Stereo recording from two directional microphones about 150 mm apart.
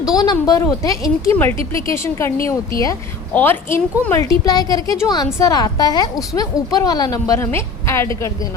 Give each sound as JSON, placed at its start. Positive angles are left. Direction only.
{"t": 0.0, "sound": "a woman's voice", "side_deg": 25}